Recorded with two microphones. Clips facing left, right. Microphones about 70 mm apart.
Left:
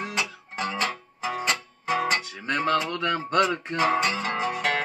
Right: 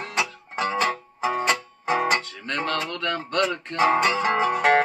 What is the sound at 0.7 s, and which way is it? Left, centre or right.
Music, right.